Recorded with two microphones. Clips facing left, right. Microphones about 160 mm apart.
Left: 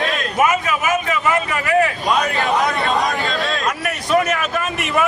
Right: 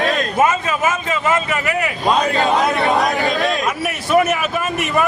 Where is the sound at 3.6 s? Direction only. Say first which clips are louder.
Right 1 dB; 5° right (ahead or behind).